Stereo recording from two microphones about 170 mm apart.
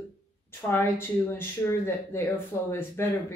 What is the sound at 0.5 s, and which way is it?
Speech, 15° left (ahead or behind).